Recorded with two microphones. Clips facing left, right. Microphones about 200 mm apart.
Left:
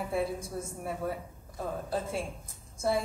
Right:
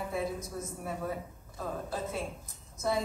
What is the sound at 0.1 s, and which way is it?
Speech, 30° left (ahead or behind).